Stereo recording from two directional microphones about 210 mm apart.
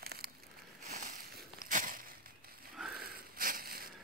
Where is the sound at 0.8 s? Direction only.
35° right (ahead or behind).